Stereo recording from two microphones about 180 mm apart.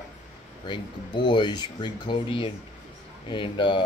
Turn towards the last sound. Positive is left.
turn(degrees=25)  # may be behind; listen again after turning